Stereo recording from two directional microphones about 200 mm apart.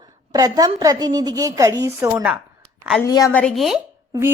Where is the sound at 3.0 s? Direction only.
15° left (ahead or behind).